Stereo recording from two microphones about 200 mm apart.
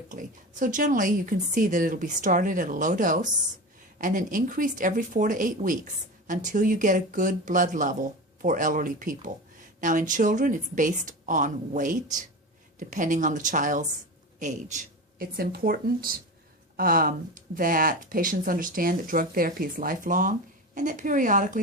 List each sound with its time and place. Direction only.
0.1 s speech: 40° right (ahead or behind)